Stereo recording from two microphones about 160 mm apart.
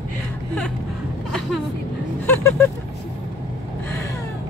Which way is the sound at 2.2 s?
15° left (ahead or behind).